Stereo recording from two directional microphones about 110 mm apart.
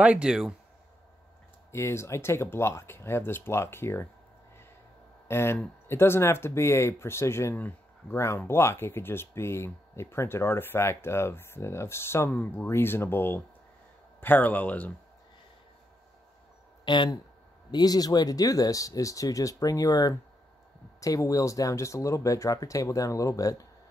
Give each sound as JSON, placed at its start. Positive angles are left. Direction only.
{"t": 0.0, "sound": "speech", "side_deg": -10}
{"t": 1.7, "sound": "speech", "side_deg": 25}
{"t": 5.3, "sound": "speech", "side_deg": 25}
{"t": 16.8, "sound": "speech", "side_deg": 45}